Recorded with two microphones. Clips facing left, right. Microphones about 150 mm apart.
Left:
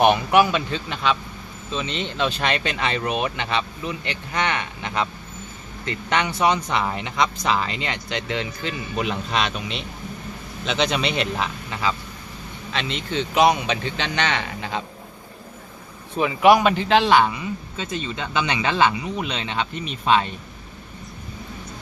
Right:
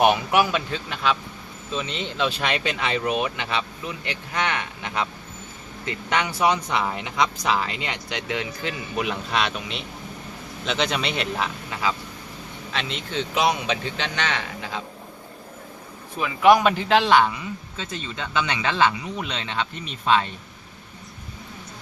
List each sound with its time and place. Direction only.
0.0 s speech: 5° right (ahead or behind)
9.0 s a man's voice: 20° left (ahead or behind)
10.7 s speech: centre (ahead or behind)
16.4 s a man's voice: 5° left (ahead or behind)